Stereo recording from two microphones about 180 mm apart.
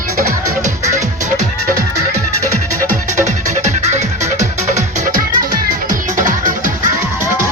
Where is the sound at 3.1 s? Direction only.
40° right (ahead or behind).